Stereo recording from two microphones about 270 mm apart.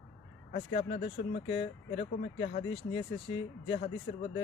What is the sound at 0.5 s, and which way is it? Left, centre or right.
Speech, left.